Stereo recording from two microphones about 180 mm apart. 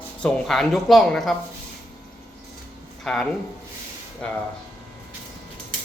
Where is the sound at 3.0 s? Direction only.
5° left (ahead or behind).